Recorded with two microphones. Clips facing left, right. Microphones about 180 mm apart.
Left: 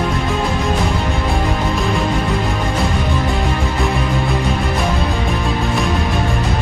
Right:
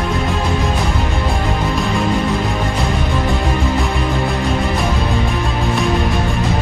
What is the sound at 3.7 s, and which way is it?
Music, centre (ahead or behind).